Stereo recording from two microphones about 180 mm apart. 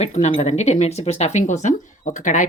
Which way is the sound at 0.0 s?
40° left (ahead or behind).